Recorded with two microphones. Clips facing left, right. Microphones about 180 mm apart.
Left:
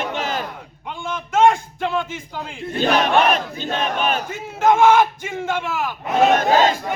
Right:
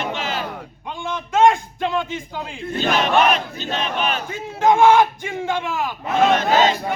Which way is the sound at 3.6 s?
50° left (ahead or behind).